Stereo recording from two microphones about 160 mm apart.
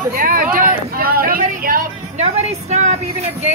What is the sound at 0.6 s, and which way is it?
Vehicle, 65° right (ahead or behind).